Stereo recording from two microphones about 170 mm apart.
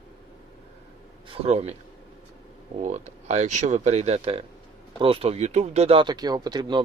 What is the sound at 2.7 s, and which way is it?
Speech, 40° right (ahead or behind).